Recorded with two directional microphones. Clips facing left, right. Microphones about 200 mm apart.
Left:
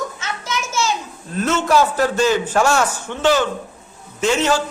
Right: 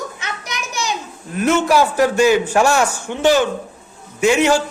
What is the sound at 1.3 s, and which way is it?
A child's voice, 15° right (ahead or behind).